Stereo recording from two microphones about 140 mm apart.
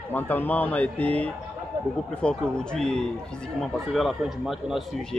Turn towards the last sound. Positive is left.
turn(degrees=0)  # may be behind; listen again after turning